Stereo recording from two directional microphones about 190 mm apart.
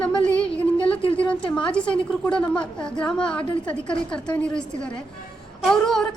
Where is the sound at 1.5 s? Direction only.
5° left (ahead or behind).